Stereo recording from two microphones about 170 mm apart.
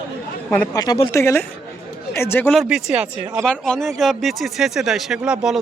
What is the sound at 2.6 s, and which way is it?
Speech, centre (ahead or behind).